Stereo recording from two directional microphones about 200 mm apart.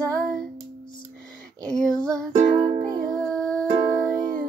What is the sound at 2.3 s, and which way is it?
Music, 20° right (ahead or behind).